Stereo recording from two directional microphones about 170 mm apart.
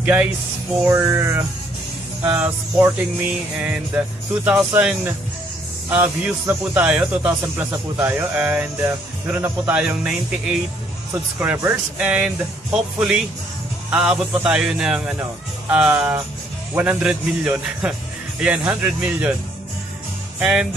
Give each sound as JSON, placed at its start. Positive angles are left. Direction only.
{"t": 0.0, "sound": "a man's voice", "side_deg": -5}
{"t": 20.3, "sound": "music", "side_deg": -5}